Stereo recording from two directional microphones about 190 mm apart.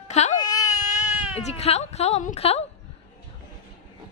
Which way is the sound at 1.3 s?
35° left (ahead or behind).